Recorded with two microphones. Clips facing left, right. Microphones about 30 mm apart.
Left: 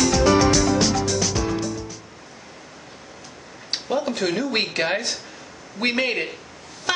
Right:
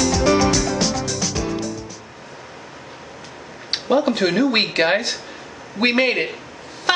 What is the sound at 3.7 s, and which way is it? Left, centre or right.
Speech, right.